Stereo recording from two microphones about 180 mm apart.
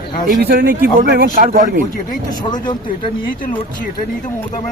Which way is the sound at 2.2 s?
25° left (ahead or behind).